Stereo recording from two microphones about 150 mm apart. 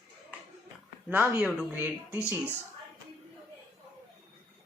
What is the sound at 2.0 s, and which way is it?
Speech, 15° left (ahead or behind).